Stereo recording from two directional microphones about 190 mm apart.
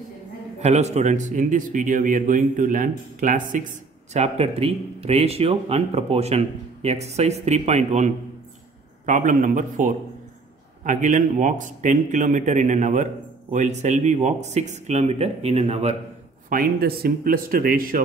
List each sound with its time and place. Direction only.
0.6 s a man's voice: 35° right (ahead or behind)
16.4 s a man's voice: 50° right (ahead or behind)